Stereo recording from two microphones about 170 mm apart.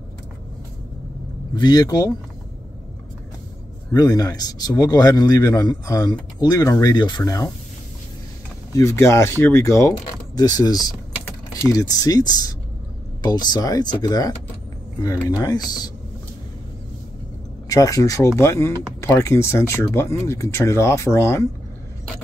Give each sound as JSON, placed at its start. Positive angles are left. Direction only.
{"t": 1.5, "sound": "speech", "side_deg": 25}
{"t": 3.9, "sound": "speech", "side_deg": 20}
{"t": 8.7, "sound": "speech", "side_deg": 15}
{"t": 17.6, "sound": "speech", "side_deg": 20}